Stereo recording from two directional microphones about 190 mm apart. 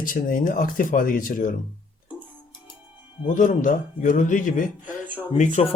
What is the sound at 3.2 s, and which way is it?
Speech, 40° left (ahead or behind).